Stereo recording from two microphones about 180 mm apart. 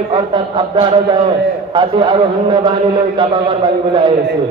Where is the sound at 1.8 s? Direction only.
25° right (ahead or behind).